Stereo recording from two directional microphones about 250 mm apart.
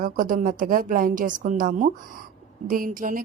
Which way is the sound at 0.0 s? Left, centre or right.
Right.